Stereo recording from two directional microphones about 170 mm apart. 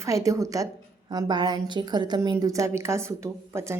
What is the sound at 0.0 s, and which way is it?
A woman's voice, 20° right (ahead or behind).